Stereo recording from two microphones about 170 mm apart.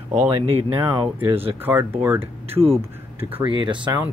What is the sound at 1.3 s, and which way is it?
Speech, 35° right (ahead or behind).